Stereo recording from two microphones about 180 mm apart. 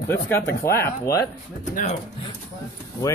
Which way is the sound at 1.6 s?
45° left (ahead or behind).